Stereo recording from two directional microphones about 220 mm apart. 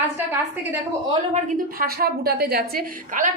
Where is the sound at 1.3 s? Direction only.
35° right (ahead or behind).